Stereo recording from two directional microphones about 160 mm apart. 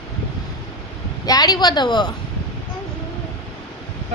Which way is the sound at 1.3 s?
25° left (ahead or behind).